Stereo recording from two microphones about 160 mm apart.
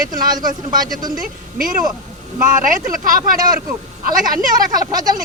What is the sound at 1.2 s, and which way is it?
Speech, 60° right (ahead or behind).